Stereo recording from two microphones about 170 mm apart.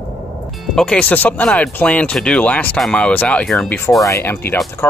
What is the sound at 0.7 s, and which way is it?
Speech, 5° left (ahead or behind).